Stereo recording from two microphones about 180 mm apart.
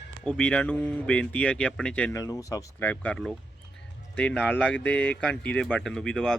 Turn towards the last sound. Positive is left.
turn(degrees=5)  # may be behind; listen again after turning